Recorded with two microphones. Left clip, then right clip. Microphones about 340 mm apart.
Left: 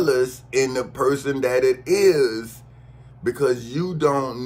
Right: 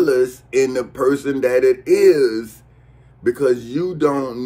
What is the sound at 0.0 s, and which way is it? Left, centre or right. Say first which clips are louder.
Speech: right 4 dB; centre.